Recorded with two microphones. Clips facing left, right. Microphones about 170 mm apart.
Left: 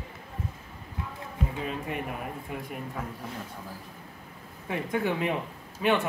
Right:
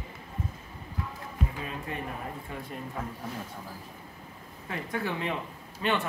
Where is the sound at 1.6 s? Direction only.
15° left (ahead or behind).